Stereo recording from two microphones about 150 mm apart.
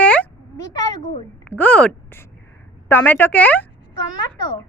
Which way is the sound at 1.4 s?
10° left (ahead or behind).